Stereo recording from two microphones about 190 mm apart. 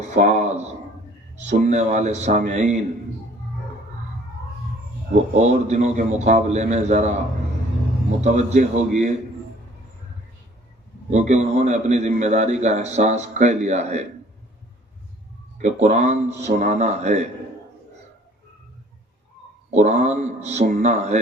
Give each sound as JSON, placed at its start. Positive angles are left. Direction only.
{"t": 0.0, "sound": "a sound", "side_deg": -40}
{"t": 1.5, "sound": "a man's voice", "side_deg": -40}
{"t": 5.4, "sound": "a man's voice", "side_deg": -35}
{"t": 8.2, "sound": "a man's voice", "side_deg": -35}
{"t": 11.1, "sound": "a man's voice", "side_deg": -35}
{"t": 15.5, "sound": "a man's voice", "side_deg": -40}
{"t": 19.7, "sound": "a man's voice", "side_deg": -35}